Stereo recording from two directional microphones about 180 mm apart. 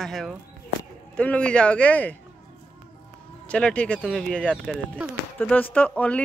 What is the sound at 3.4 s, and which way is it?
Speech, 5° left (ahead or behind).